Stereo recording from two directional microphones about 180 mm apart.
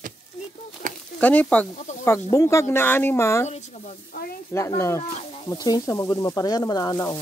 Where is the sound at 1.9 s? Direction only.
40° left (ahead or behind).